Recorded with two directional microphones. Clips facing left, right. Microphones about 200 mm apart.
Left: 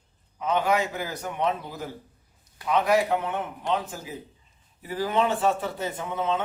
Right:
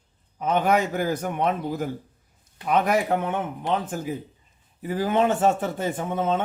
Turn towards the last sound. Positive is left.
turn(degrees=-50)  # may be behind; listen again after turning